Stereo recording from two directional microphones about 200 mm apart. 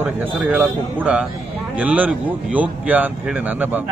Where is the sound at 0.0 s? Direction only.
10° right (ahead or behind).